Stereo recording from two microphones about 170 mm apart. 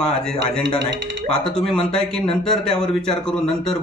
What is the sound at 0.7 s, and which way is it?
Speech, 90° right.